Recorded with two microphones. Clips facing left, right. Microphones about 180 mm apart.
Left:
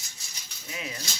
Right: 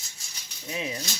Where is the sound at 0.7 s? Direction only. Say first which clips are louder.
Right 5 dB; 25° right (ahead or behind).